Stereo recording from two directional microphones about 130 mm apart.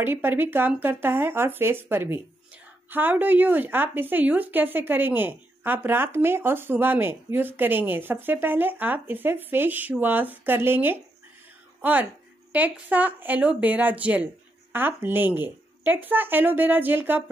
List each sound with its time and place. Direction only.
0.0 s speech: 15° right (ahead or behind)